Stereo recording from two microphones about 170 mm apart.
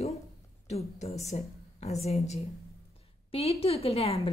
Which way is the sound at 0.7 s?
40° left (ahead or behind).